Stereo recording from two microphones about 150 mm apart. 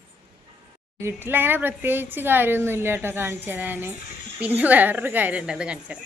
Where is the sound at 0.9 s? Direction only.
15° right (ahead or behind).